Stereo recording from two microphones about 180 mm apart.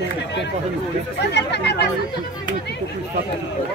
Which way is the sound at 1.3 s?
70° left (ahead or behind).